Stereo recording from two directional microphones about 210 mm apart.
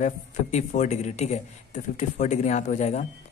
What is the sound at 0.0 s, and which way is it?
Speech, 35° left (ahead or behind).